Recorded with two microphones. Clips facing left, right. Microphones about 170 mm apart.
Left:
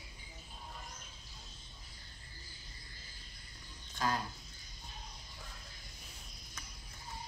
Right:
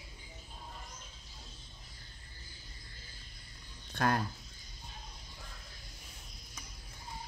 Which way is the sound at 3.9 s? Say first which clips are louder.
Right 4 dB; 60° right (ahead or behind).